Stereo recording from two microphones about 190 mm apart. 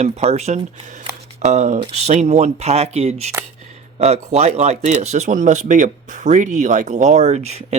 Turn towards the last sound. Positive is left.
turn(degrees=-35)  # may be behind; listen again after turning